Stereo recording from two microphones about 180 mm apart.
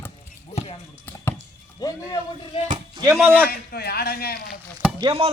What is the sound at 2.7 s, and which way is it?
Speech, 25° right (ahead or behind).